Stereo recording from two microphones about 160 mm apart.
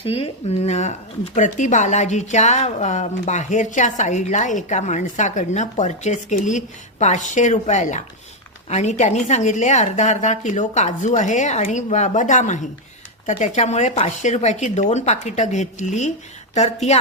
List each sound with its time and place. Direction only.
0.0 s speech: 35° left (ahead or behind)